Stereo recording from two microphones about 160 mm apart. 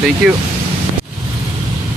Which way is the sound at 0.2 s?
Centre (ahead or behind).